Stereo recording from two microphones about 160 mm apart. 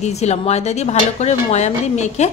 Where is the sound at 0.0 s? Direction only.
45° left (ahead or behind).